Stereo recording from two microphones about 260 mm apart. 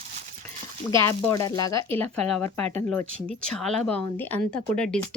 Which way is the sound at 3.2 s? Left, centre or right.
Centre.